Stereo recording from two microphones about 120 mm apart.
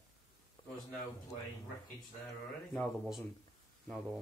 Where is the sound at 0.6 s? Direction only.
40° left (ahead or behind).